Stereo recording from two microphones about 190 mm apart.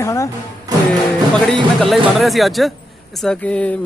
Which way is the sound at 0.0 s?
15° left (ahead or behind).